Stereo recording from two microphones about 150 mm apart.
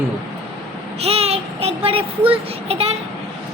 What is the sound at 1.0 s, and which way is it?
A child's voice, 40° right (ahead or behind).